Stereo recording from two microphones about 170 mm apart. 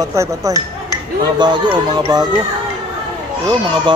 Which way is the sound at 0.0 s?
20° right (ahead or behind).